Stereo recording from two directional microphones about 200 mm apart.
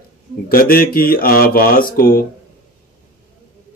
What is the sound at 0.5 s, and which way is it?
Speech, 45° left (ahead or behind).